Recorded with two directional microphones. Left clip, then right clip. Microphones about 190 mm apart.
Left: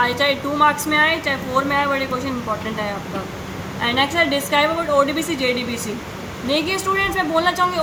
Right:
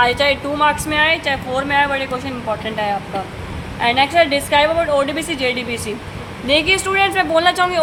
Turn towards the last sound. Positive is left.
turn(degrees=-40)  # may be behind; listen again after turning